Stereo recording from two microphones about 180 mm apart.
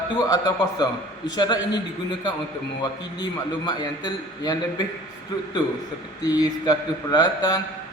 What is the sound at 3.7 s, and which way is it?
Mantra, 20° left (ahead or behind).